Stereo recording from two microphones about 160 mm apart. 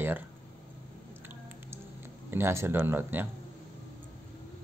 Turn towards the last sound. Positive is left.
turn(degrees=-10)  # may be behind; listen again after turning